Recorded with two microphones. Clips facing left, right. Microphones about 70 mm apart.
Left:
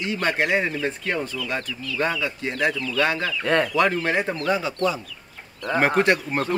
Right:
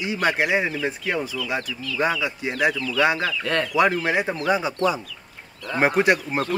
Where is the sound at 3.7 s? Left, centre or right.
Centre.